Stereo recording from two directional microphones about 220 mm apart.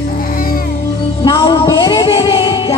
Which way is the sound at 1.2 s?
20° left (ahead or behind).